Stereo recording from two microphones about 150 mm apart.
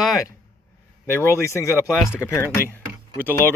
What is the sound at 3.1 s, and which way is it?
Speech, 15° right (ahead or behind).